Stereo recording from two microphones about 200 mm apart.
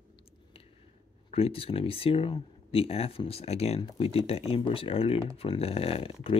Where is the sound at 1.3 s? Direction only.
30° left (ahead or behind).